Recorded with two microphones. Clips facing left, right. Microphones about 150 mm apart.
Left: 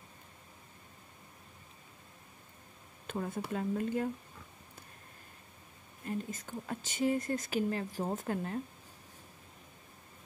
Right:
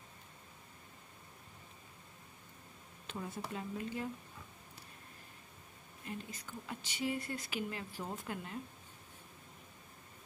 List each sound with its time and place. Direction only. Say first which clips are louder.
3.1 s speech: left 6 dB; 50° left (ahead or behind)
6.0 s speech: left 7 dB; 45° left (ahead or behind)